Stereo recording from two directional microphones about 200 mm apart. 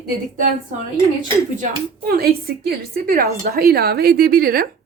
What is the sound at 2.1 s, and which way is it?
A woman's voice, 50° right (ahead or behind).